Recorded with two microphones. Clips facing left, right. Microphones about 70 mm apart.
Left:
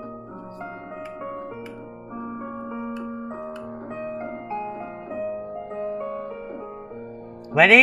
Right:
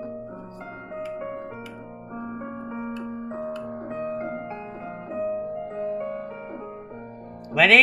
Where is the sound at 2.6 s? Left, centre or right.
Right.